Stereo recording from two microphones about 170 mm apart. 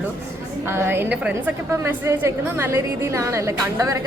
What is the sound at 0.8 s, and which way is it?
A woman's voice, 15° right (ahead or behind).